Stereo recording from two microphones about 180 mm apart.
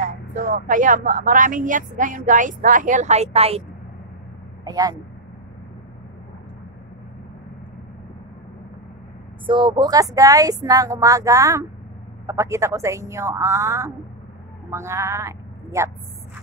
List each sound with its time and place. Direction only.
0.3 s speech: 45° right (ahead or behind)
4.6 s speech: 20° right (ahead or behind)
9.5 s a woman's voice: 25° right (ahead or behind)